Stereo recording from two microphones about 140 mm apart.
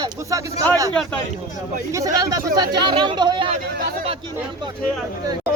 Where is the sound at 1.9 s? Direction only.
25° right (ahead or behind).